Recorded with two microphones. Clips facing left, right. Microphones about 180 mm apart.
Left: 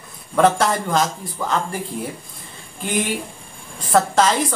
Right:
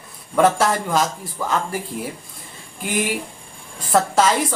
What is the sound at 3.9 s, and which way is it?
Speech, 5° right (ahead or behind).